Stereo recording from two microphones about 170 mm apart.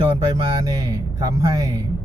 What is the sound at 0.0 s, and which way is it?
Speech, 30° right (ahead or behind).